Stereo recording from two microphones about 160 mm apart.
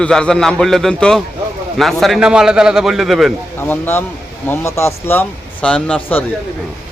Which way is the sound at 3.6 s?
15° left (ahead or behind).